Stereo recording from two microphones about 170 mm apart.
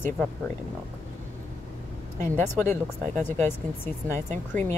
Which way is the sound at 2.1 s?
10° left (ahead or behind).